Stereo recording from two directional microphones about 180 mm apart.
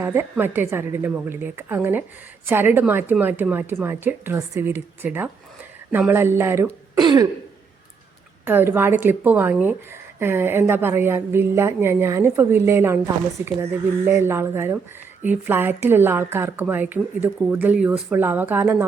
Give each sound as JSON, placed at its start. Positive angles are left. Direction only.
{"t": 0.0, "sound": "a woman's voice", "side_deg": -15}
{"t": 7.0, "sound": "throat clearing", "side_deg": -25}
{"t": 8.4, "sound": "a woman's voice", "side_deg": -10}